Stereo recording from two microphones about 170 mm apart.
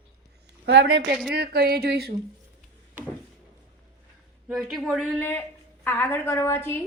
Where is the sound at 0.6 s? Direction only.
90° right.